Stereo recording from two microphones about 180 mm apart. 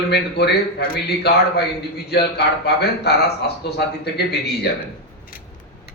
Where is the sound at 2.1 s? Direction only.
65° left (ahead or behind).